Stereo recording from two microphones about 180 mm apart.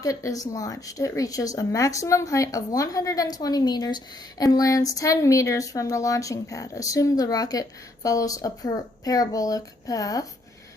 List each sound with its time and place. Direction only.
0.0 s speech: 20° left (ahead or behind)